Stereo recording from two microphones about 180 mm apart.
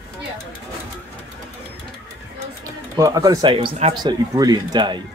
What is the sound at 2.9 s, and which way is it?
Speech, 20° right (ahead or behind).